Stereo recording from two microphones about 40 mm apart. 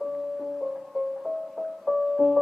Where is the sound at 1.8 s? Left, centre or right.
Centre.